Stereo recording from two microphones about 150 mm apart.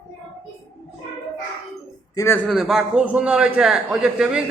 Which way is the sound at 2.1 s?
20° left (ahead or behind).